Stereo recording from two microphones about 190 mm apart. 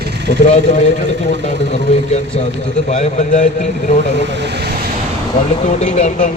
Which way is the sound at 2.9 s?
40° left (ahead or behind).